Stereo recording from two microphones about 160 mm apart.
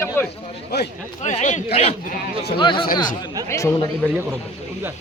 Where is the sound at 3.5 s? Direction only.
20° left (ahead or behind).